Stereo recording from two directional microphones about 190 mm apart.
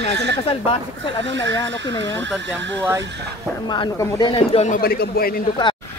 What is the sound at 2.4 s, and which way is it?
Speech, 70° right (ahead or behind).